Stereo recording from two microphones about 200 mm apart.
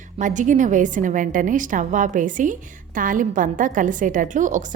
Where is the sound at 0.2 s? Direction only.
40° right (ahead or behind).